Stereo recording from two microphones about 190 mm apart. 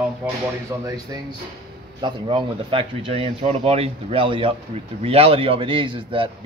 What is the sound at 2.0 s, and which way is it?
A man's voice, 25° right (ahead or behind).